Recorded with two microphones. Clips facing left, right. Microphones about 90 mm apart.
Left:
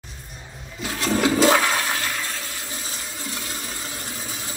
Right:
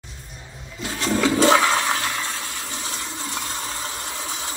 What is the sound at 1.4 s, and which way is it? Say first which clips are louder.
Toilet flush: right 4 dB; 25° right (ahead or behind).